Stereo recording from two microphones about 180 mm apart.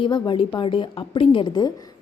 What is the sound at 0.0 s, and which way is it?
A woman's voice, 25° left (ahead or behind).